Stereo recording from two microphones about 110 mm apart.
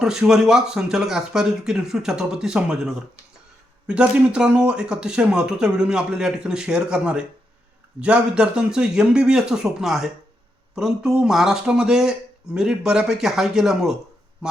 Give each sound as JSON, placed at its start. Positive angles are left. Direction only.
{"t": 0.0, "sound": "speech", "side_deg": -5}